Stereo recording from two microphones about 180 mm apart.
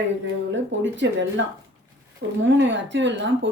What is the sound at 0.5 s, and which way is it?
Speech, 90° right.